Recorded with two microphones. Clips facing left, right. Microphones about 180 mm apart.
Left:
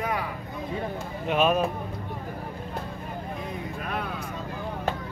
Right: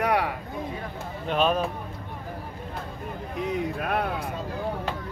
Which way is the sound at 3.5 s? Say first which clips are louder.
Right 6 dB; 60° right (ahead or behind).